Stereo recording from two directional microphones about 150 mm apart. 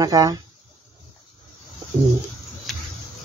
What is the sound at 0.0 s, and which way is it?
Speech, 25° right (ahead or behind).